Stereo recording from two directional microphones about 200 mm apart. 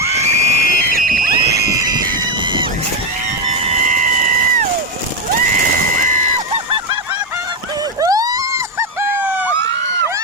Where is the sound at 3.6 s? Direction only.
35° right (ahead or behind).